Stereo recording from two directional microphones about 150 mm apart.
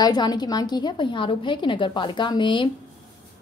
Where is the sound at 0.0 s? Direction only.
25° left (ahead or behind).